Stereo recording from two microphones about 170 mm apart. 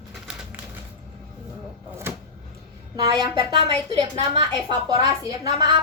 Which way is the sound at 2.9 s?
25° right (ahead or behind).